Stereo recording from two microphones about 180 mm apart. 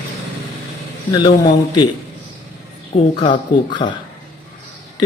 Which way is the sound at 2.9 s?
35° left (ahead or behind).